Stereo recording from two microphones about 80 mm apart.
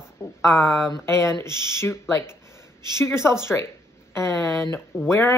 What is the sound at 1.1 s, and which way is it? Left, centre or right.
Speech, left.